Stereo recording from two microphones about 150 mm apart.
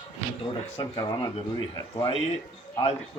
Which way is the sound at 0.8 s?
30° left (ahead or behind).